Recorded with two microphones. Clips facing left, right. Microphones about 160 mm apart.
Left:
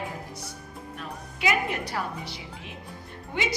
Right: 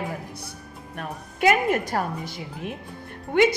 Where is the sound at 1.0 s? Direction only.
50° right (ahead or behind).